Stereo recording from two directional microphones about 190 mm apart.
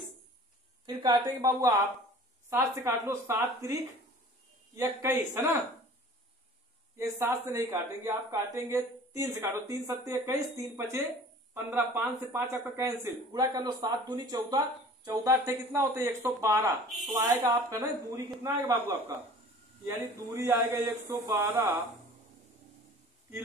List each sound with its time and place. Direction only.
0.8 s speech: 20° right (ahead or behind)
7.0 s speech: 15° right (ahead or behind)